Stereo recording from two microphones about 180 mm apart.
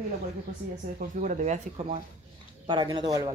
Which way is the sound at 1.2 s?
45° right (ahead or behind).